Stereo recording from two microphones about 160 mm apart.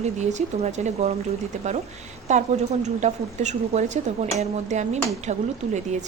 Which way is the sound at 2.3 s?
45° right (ahead or behind).